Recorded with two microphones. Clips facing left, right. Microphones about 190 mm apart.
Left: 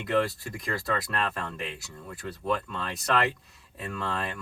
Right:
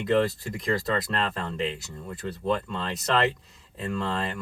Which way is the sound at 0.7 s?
20° right (ahead or behind).